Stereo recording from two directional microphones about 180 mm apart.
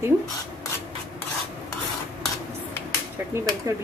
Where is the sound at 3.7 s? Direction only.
15° right (ahead or behind).